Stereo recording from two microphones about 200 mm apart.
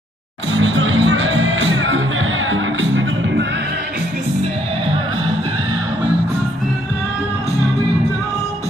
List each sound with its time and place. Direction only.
0.5 s music: 75° right (ahead or behind)